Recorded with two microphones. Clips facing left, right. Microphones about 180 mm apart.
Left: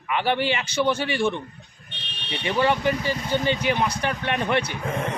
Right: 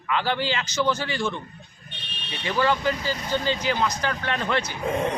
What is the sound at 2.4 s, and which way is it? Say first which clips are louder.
Speech: left 1 dB; 25° left (ahead or behind).